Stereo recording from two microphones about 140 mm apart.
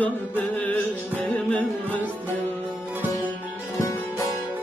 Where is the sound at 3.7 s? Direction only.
25° left (ahead or behind).